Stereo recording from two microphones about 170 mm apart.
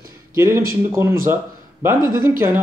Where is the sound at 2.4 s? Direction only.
15° right (ahead or behind).